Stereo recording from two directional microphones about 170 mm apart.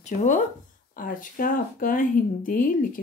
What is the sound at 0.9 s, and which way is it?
Speech, 55° left (ahead or behind).